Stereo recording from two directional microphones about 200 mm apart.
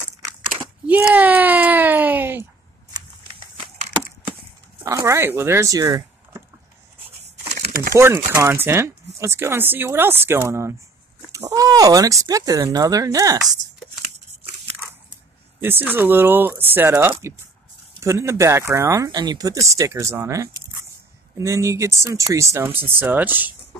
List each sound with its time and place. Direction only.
0.8 s a sound: 10° right (ahead or behind)
4.8 s speech: 15° right (ahead or behind)
7.5 s crumpling: 45° right (ahead or behind)
7.9 s speech: 10° right (ahead or behind)
15.6 s speech: 10° right (ahead or behind)